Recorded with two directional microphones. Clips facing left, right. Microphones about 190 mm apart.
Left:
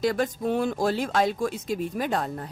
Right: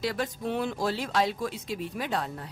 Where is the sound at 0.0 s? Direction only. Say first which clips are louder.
Left 6 dB; 45° left (ahead or behind).